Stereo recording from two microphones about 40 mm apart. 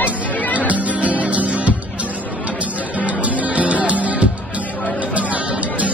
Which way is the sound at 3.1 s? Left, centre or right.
Right.